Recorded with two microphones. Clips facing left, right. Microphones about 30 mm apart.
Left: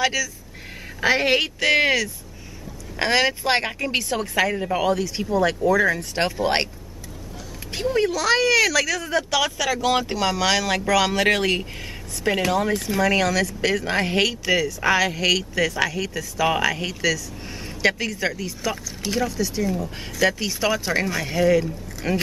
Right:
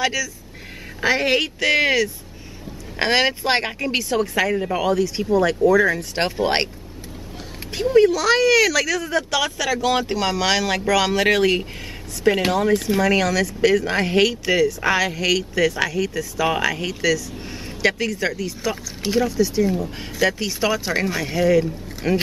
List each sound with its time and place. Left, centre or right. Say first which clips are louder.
0.0 s speech: even; centre
3.0 s speech: right 1 dB; centre
6.1 s speech: right 1 dB; centre
7.7 s speech: right 6 dB; centre
20.2 s speech: right 1 dB; centre